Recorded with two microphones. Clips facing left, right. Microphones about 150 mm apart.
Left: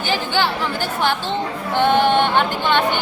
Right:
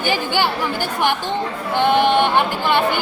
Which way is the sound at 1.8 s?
15° right (ahead or behind).